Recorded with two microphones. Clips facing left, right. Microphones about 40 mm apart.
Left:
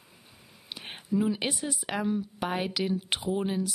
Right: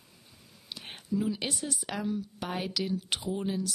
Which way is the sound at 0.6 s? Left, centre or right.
Left.